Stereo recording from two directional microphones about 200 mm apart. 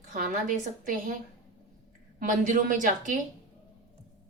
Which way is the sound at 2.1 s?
40° right (ahead or behind).